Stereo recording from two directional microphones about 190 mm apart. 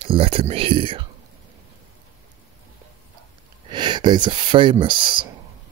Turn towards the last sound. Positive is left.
turn(degrees=-25)  # may be behind; listen again after turning